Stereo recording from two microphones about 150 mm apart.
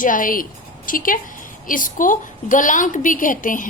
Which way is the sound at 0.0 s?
65° left (ahead or behind).